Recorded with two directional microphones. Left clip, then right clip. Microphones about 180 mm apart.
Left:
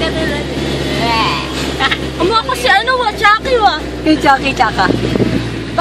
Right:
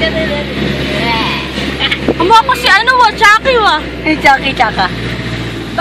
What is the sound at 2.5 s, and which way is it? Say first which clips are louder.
Speech: right 3 dB; 40° right (ahead or behind).